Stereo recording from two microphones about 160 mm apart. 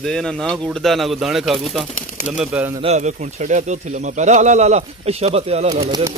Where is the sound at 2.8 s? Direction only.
45° right (ahead or behind).